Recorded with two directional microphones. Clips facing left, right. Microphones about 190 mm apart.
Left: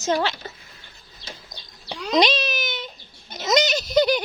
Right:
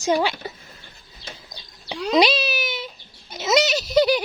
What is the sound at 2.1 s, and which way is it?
A child's voice, 5° right (ahead or behind).